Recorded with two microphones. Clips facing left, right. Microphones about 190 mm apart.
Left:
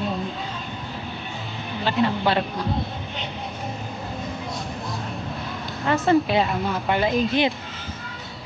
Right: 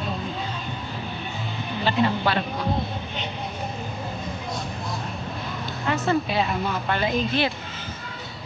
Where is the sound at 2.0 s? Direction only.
Centre (ahead or behind).